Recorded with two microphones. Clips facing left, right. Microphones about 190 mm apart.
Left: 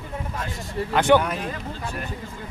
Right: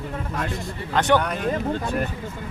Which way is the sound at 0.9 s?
10° left (ahead or behind).